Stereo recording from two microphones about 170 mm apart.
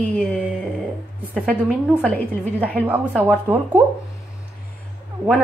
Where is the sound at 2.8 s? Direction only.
10° right (ahead or behind).